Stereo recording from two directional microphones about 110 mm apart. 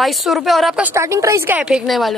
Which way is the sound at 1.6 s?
10° right (ahead or behind).